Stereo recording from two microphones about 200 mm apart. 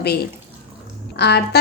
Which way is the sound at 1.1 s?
55° left (ahead or behind).